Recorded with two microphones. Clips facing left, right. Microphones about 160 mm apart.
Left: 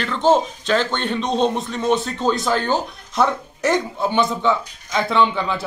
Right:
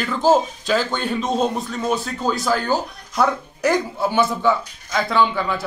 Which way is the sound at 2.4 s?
20° left (ahead or behind).